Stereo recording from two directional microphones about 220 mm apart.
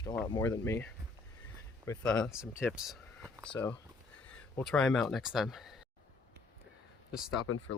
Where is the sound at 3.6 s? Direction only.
5° left (ahead or behind).